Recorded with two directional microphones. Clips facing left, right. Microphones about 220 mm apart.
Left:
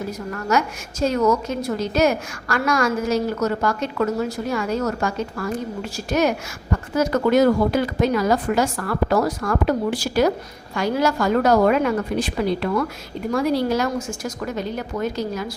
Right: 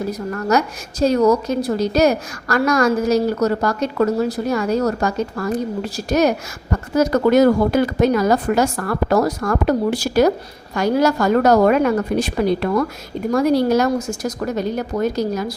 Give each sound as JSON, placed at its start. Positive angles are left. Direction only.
{"t": 0.1, "sound": "a woman's voice", "side_deg": -40}